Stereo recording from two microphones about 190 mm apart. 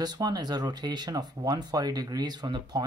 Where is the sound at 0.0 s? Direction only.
20° right (ahead or behind).